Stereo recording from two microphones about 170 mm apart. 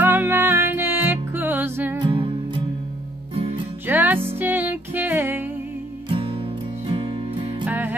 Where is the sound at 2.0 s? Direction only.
30° right (ahead or behind).